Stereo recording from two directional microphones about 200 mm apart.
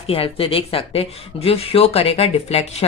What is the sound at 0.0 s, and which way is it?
Speech, 30° left (ahead or behind).